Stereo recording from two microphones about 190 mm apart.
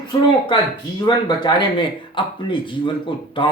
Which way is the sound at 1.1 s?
25° left (ahead or behind).